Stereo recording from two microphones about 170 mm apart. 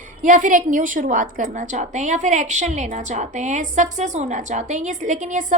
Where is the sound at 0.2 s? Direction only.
50° right (ahead or behind).